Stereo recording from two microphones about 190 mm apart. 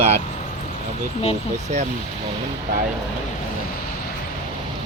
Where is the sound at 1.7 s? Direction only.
40° right (ahead or behind).